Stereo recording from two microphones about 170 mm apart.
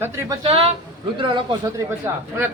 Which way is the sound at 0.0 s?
15° right (ahead or behind).